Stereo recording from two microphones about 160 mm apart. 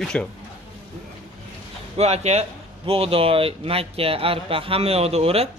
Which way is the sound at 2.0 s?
40° right (ahead or behind).